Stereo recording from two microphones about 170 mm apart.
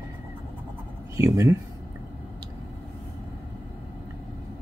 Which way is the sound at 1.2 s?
20° right (ahead or behind).